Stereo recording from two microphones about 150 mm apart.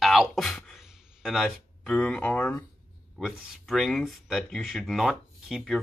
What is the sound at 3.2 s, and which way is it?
Speech, centre (ahead or behind).